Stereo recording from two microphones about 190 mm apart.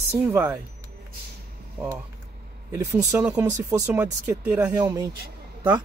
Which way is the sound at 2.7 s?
15° right (ahead or behind).